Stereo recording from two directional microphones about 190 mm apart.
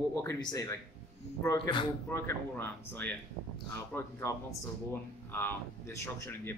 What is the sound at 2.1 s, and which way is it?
Speech, 10° left (ahead or behind).